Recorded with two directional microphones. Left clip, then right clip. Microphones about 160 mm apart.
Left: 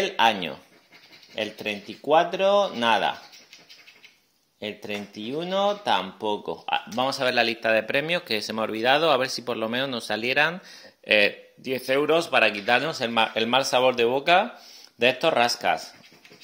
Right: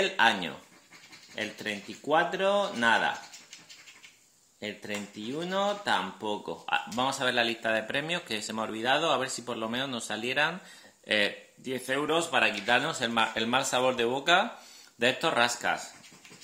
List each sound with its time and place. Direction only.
0.0 s speech: 30° left (ahead or behind)
4.6 s speech: 35° left (ahead or behind)